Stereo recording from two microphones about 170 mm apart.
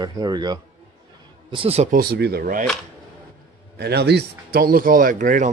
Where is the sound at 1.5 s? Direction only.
35° right (ahead or behind).